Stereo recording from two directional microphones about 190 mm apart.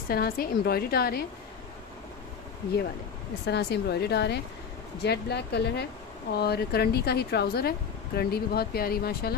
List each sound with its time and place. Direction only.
0.1 s a woman's voice: 50° left (ahead or behind)
3.4 s a woman's voice: 60° left (ahead or behind)